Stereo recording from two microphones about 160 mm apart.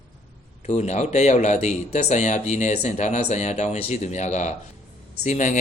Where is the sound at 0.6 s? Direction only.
45° left (ahead or behind).